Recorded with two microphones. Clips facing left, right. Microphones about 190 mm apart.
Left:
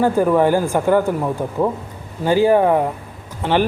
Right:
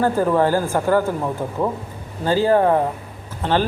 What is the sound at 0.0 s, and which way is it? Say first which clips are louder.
A man's voice: left 3 dB; 15° left (ahead or behind).